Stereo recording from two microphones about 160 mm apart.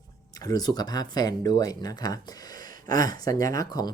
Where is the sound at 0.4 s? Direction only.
25° left (ahead or behind).